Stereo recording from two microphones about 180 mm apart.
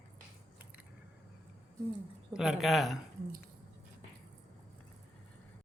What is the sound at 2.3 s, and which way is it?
Speech, 5° right (ahead or behind).